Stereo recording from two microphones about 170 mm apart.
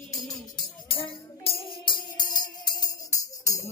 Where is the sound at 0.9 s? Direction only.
35° left (ahead or behind).